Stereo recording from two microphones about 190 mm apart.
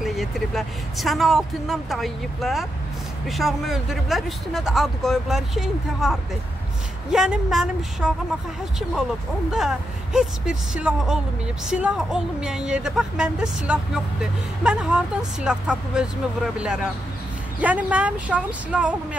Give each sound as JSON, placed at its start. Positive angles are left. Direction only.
{"t": 0.0, "sound": "speech", "side_deg": 0}
{"t": 9.5, "sound": "speech", "side_deg": -5}